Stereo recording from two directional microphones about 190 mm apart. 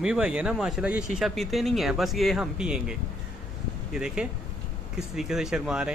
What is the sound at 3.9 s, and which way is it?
A man's voice, 5° right (ahead or behind).